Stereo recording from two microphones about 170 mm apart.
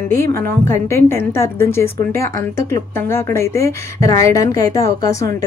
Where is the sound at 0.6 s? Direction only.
15° left (ahead or behind).